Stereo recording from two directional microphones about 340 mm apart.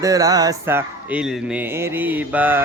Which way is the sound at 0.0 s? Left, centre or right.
Centre.